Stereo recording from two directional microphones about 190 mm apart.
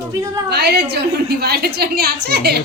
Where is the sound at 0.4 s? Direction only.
60° right (ahead or behind).